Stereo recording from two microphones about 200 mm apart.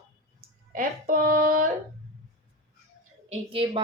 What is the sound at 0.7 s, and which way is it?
Speech, 45° right (ahead or behind).